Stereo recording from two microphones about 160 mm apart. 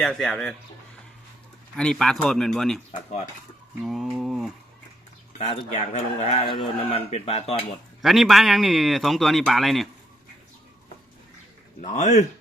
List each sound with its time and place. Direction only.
0.0 s speech: 5° left (ahead or behind)
1.7 s speech: 5° left (ahead or behind)
3.8 s speech: 5° right (ahead or behind)
5.4 s speech: 40° left (ahead or behind)
8.0 s speech: centre (ahead or behind)
11.8 s speech: 50° left (ahead or behind)